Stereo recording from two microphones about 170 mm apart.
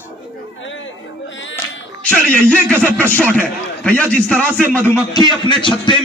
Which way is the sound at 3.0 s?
10° left (ahead or behind).